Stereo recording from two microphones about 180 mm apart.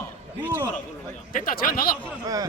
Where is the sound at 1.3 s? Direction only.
50° left (ahead or behind).